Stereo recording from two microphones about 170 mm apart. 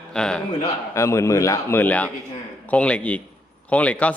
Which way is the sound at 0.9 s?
15° left (ahead or behind).